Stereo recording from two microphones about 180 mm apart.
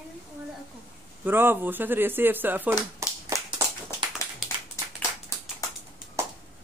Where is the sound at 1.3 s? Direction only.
10° right (ahead or behind).